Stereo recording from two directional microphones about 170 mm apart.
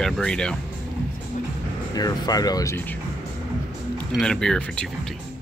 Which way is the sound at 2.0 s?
25° left (ahead or behind).